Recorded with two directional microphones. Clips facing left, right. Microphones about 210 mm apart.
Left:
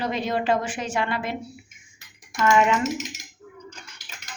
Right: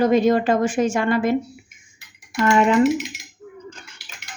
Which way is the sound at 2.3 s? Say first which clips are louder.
Right 4 dB; 40° right (ahead or behind).